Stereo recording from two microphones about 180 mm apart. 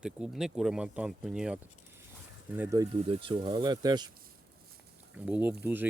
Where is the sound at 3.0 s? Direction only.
30° right (ahead or behind).